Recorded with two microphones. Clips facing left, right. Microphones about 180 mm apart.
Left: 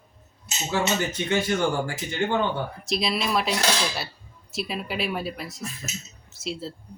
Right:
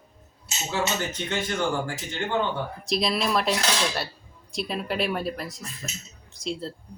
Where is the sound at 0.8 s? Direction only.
10° left (ahead or behind).